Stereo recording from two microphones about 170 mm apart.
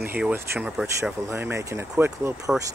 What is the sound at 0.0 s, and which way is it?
Speech, 10° right (ahead or behind).